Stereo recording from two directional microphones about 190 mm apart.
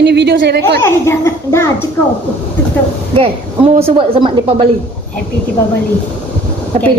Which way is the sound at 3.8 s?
30° right (ahead or behind).